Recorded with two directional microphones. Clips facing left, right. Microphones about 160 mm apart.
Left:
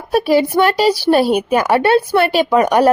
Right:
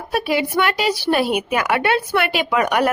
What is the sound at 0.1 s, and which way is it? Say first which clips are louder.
A woman's voice: left 7 dB; 40° left (ahead or behind).